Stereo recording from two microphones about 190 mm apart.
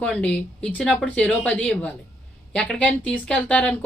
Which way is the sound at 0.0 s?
5° left (ahead or behind).